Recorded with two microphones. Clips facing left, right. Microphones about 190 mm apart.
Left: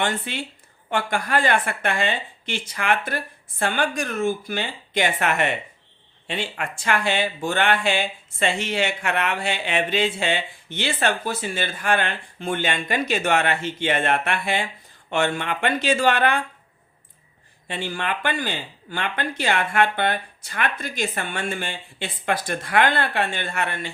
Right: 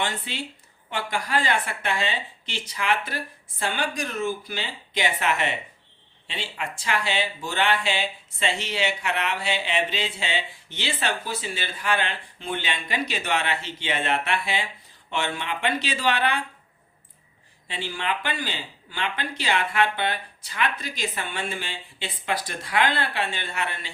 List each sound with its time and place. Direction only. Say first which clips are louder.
0.0 s a woman's voice: left 4 dB; 55° left (ahead or behind)
17.7 s speech: left 2 dB; 50° left (ahead or behind)